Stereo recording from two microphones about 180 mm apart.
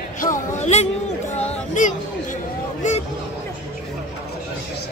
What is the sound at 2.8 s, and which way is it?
Hubbub, 45° left (ahead or behind).